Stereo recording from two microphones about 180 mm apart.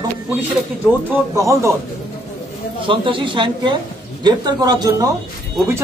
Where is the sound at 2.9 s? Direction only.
25° right (ahead or behind).